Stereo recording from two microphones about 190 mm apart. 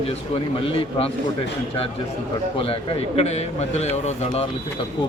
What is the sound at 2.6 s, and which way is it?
A man's voice, 30° left (ahead or behind).